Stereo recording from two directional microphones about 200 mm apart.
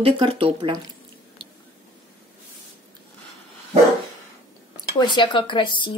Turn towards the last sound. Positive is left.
turn(degrees=25)  # may be behind; listen again after turning